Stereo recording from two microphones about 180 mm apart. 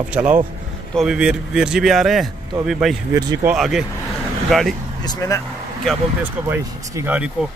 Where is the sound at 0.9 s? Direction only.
5° right (ahead or behind).